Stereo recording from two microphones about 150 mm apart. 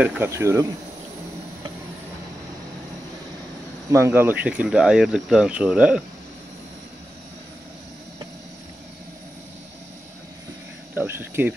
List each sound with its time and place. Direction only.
0.0 s speech: 15° right (ahead or behind)
3.9 s speech: 15° right (ahead or behind)
11.0 s speech: 15° right (ahead or behind)